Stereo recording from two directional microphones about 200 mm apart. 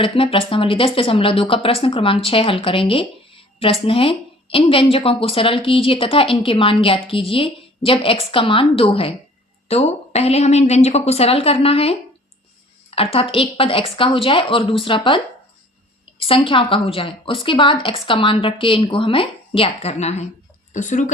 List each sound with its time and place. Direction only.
0.0 s a woman's voice: 25° left (ahead or behind)
16.5 s a woman's voice: 25° left (ahead or behind)